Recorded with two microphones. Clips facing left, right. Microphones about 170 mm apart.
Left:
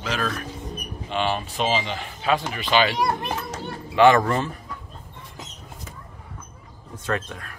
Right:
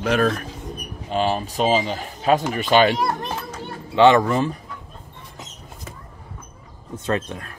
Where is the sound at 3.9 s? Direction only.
25° right (ahead or behind).